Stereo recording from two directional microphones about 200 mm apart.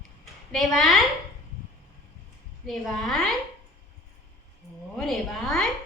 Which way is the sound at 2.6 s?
Centre (ahead or behind).